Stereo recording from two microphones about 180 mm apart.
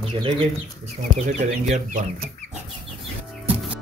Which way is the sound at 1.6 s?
40° right (ahead or behind).